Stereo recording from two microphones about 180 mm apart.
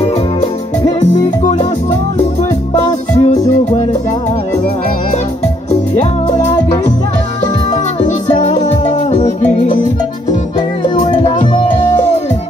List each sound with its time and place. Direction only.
1.4 s music: 40° left (ahead or behind)